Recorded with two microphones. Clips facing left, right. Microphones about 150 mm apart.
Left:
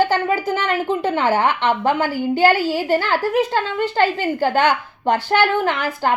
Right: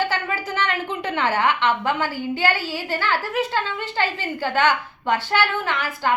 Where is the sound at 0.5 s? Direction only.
40° left (ahead or behind).